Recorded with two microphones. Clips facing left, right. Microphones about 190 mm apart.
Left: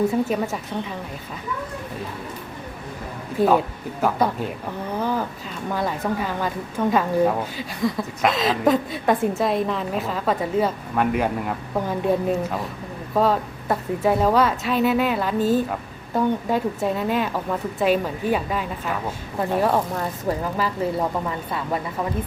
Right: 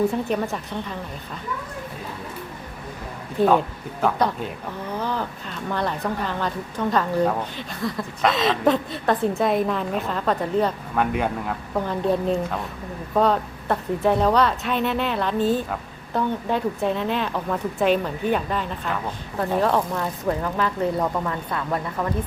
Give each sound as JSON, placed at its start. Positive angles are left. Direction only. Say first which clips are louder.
{"t": 0.1, "sound": "a woman's voice", "louder": "left 2 dB", "side_deg": 0}
{"t": 4.0, "sound": "a woman's voice", "louder": "left 1 dB", "side_deg": 5}
{"t": 15.4, "sound": "a woman's voice", "louder": "left 2 dB", "side_deg": 40}
{"t": 15.7, "sound": "a woman's voice", "louder": "left 1 dB", "side_deg": 5}